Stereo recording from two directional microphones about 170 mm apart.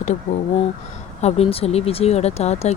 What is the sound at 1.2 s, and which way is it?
Speech, 35° left (ahead or behind).